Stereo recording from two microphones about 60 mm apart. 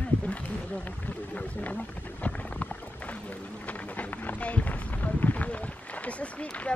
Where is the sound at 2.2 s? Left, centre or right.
Left.